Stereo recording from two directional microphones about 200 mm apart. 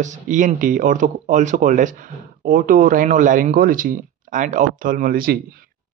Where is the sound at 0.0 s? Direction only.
40° right (ahead or behind).